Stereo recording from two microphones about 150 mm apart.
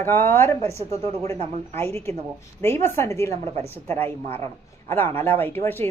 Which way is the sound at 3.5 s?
45° right (ahead or behind).